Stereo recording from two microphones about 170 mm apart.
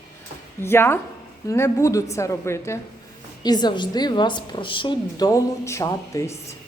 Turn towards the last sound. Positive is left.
turn(degrees=20)  # may be behind; listen again after turning